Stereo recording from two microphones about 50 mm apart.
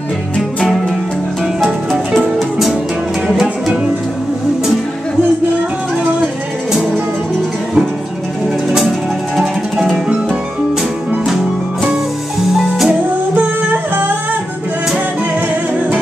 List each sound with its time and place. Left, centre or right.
0.7 s music: centre
3.3 s music: centre
8.6 s music: centre
12.5 s music: centre
13.3 s music: right